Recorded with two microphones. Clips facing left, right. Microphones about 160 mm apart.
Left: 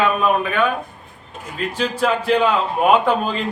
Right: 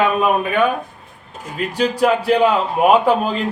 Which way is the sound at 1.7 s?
10° right (ahead or behind).